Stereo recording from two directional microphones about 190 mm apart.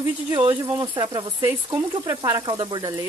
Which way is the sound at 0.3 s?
25° right (ahead or behind).